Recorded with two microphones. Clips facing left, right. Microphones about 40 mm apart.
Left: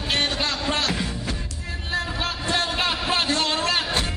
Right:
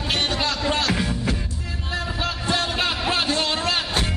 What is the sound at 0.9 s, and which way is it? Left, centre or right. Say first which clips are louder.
Music: right 3 dB; centre.